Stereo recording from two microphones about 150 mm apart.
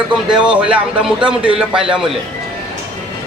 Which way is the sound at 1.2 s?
35° right (ahead or behind).